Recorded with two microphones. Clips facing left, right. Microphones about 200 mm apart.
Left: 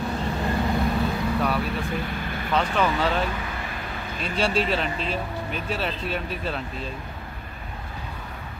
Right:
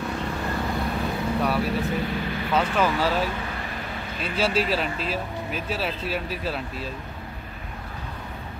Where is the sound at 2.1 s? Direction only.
50° left (ahead or behind).